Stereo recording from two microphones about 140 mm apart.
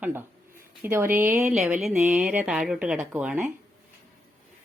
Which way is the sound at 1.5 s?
5° right (ahead or behind).